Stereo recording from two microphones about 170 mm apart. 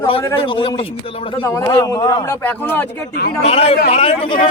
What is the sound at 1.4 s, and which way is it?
A man's voice, 20° left (ahead or behind).